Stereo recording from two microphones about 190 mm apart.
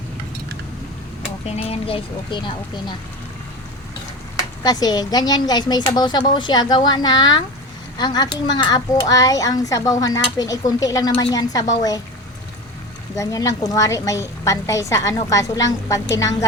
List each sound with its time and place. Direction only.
1.5 s speech: 30° left (ahead or behind)
4.6 s speech: 20° left (ahead or behind)
13.1 s a woman's voice: 15° left (ahead or behind)